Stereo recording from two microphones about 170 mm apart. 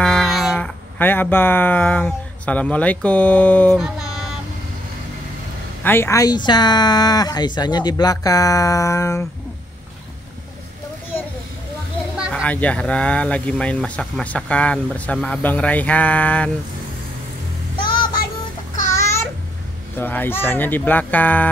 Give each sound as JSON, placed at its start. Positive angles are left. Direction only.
{"t": 0.0, "sound": "cat", "side_deg": 5}
{"t": 0.9, "sound": "speech", "side_deg": 10}
{"t": 3.7, "sound": "a sound", "side_deg": 0}
{"t": 5.9, "sound": "speech", "side_deg": 15}
{"t": 12.2, "sound": "speech", "side_deg": 0}
{"t": 18.9, "sound": "babbling", "side_deg": 15}
{"t": 20.0, "sound": "speech", "side_deg": 10}